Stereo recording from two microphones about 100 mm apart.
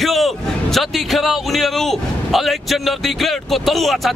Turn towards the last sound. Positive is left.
turn(degrees=0)  # may be behind; listen again after turning